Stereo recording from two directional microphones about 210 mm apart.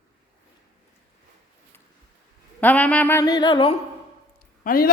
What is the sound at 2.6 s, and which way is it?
A woman's voice, 5° left (ahead or behind).